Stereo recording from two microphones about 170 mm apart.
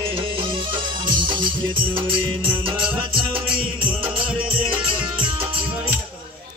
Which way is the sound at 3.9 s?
30° right (ahead or behind).